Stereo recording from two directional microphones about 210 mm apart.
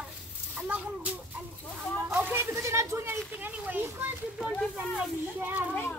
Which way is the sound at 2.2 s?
10° right (ahead or behind).